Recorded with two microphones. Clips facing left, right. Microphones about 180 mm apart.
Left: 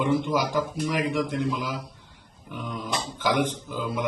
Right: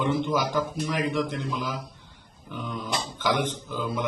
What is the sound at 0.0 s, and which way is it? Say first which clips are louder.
A man's voice: left 1 dB; 5° left (ahead or behind).